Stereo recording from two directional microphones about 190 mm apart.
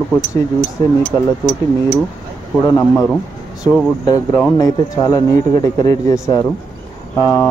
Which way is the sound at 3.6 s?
5° right (ahead or behind).